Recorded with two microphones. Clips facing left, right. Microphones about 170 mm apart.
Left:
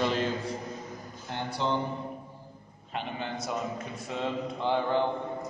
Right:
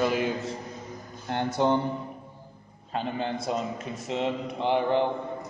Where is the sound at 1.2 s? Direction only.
55° right (ahead or behind).